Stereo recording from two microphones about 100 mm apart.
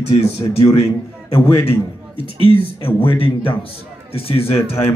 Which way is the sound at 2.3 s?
55° right (ahead or behind).